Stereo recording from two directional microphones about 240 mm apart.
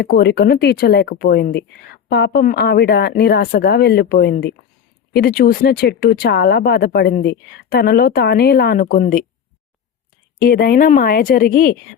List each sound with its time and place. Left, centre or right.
0.0 s speech: left
10.4 s speech: left